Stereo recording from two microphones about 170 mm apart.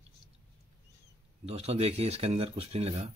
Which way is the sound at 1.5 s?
35° right (ahead or behind).